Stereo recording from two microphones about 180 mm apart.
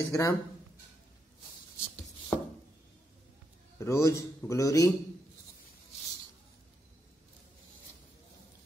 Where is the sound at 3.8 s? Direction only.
15° left (ahead or behind).